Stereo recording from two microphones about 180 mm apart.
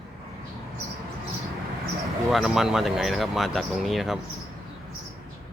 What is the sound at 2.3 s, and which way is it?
Speech, centre (ahead or behind).